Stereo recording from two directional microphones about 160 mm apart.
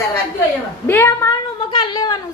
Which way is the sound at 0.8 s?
15° left (ahead or behind).